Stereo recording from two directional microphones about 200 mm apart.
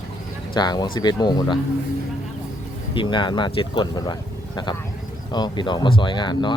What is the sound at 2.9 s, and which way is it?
Speech, 25° left (ahead or behind).